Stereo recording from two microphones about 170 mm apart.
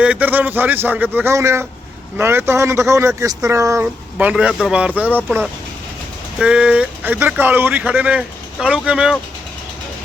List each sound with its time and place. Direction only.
0.0 s speech: 10° right (ahead or behind)